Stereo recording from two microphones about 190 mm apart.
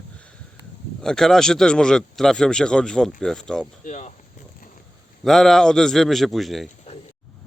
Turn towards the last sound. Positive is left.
turn(degrees=0)  # may be behind; listen again after turning